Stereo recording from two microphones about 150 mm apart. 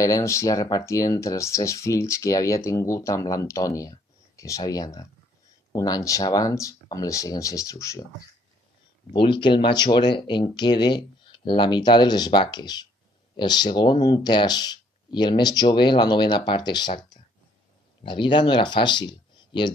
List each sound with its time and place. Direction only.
0.0 s speech: 20° left (ahead or behind)
9.1 s speech: 35° left (ahead or behind)